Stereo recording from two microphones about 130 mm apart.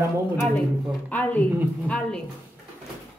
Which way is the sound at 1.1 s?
10° left (ahead or behind).